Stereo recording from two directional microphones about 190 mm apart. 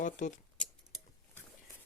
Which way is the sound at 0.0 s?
40° left (ahead or behind).